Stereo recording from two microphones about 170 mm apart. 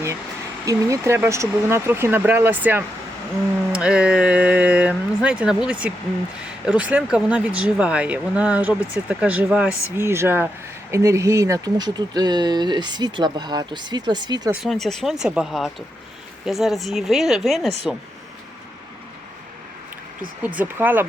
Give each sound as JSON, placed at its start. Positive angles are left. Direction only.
{"t": 0.6, "sound": "speech", "side_deg": -20}
{"t": 14.5, "sound": "speech", "side_deg": 0}
{"t": 20.6, "sound": "speech", "side_deg": -10}